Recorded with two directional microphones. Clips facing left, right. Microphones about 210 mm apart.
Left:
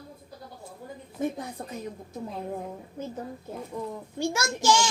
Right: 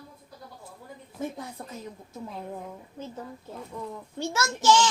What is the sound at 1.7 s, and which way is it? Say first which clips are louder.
Speech: left 4 dB; 15° left (ahead or behind).